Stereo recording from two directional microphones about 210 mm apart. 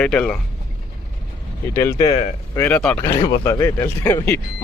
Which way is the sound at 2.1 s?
30° left (ahead or behind).